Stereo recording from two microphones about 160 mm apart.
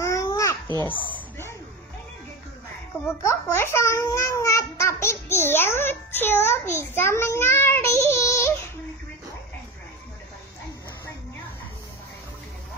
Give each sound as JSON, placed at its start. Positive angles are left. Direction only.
{"t": 0.0, "sound": "babbling", "side_deg": 20}
{"t": 0.7, "sound": "a child's voice", "side_deg": 10}
{"t": 3.1, "sound": "a child's voice", "side_deg": 15}